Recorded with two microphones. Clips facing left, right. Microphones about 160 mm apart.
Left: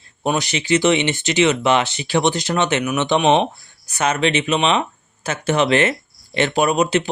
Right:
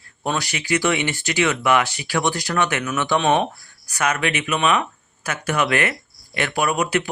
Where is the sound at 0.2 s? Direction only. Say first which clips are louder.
Left 4 dB; 20° left (ahead or behind).